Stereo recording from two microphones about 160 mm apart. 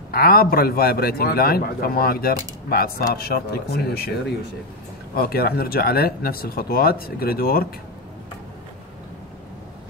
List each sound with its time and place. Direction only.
0.1 s a man's voice: 70° left (ahead or behind)
5.1 s a man's voice: 70° left (ahead or behind)